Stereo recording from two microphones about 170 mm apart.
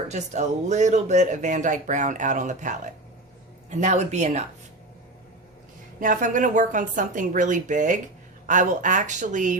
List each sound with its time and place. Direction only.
0.1 s speech: 45° right (ahead or behind)
6.0 s speech: 50° right (ahead or behind)